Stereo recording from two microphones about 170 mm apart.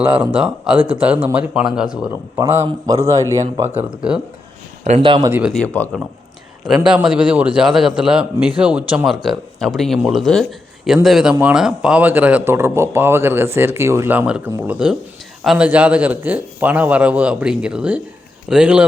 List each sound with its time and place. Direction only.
0.0 s speech: 5° right (ahead or behind)
3.6 s speech: 10° right (ahead or behind)
4.8 s a man's voice: 35° right (ahead or behind)
5.3 s a man's voice: 5° right (ahead or behind)
6.8 s a man's voice: 5° right (ahead or behind)